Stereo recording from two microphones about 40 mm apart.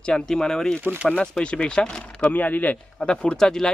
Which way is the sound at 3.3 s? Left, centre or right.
Centre.